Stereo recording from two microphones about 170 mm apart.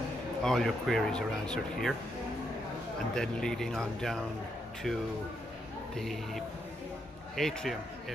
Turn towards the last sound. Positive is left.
turn(degrees=0)  # may be behind; listen again after turning